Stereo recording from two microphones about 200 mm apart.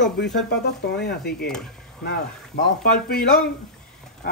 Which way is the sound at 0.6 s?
55° left (ahead or behind).